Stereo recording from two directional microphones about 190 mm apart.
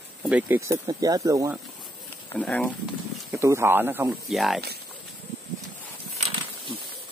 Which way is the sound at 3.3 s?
15° right (ahead or behind).